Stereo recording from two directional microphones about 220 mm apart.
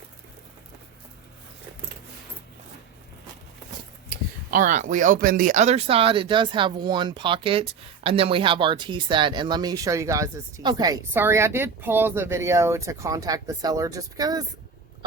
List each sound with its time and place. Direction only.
4.5 s speech: 35° right (ahead or behind); by 14.4 s 15° right (ahead or behind)